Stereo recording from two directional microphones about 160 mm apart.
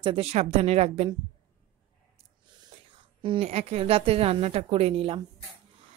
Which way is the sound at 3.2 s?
35° right (ahead or behind).